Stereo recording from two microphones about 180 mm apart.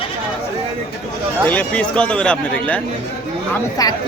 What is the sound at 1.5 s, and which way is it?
Speech, 5° left (ahead or behind).